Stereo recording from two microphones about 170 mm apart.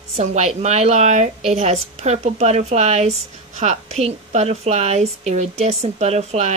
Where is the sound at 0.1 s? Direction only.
40° right (ahead or behind).